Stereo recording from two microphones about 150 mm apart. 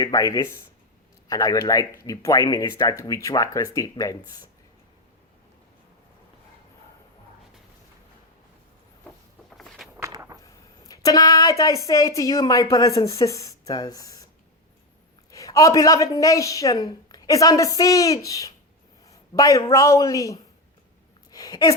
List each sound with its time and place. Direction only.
0.0 s a woman's voice: 25° left (ahead or behind)
9.6 s walk: centre (ahead or behind)
10.0 s a sound: 20° right (ahead or behind)
10.4 s speech: 25° left (ahead or behind)
15.3 s a woman's voice: 20° left (ahead or behind)
21.3 s a sound: 25° left (ahead or behind)